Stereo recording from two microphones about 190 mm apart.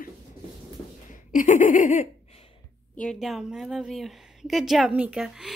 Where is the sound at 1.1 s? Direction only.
45° left (ahead or behind).